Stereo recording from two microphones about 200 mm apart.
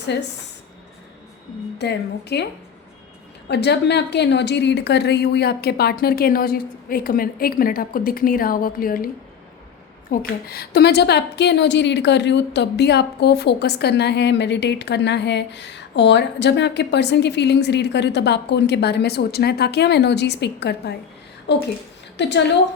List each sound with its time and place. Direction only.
1.8 s a woman's voice: 55° left (ahead or behind)
3.5 s a woman's voice: 55° left (ahead or behind)
10.1 s a woman's voice: 50° left (ahead or behind)